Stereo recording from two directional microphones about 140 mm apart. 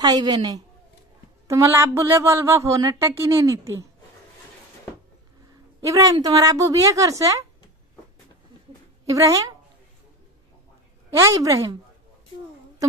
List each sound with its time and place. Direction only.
0.0 s a woman's voice: 25° right (ahead or behind)
5.8 s a woman's voice: 25° right (ahead or behind)
9.1 s a woman's voice: 25° right (ahead or behind)
11.1 s a woman's voice: 20° right (ahead or behind)